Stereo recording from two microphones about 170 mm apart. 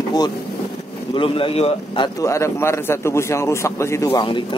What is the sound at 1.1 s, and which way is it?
Speech, 30° left (ahead or behind).